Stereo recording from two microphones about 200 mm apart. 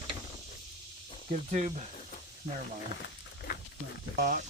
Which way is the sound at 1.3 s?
35° right (ahead or behind).